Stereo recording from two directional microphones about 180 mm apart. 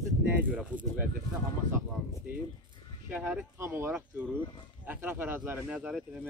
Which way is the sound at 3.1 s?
10° right (ahead or behind).